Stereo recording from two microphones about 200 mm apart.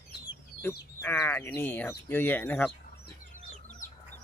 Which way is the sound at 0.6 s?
10° left (ahead or behind).